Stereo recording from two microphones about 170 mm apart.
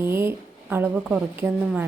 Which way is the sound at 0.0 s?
15° right (ahead or behind).